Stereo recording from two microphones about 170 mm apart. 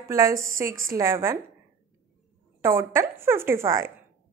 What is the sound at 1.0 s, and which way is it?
Speech, 15° right (ahead or behind).